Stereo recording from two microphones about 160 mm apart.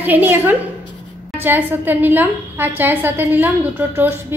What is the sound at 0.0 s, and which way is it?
A woman's voice, 10° right (ahead or behind).